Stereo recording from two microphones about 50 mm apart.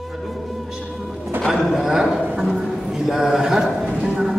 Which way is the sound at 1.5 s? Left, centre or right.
Centre.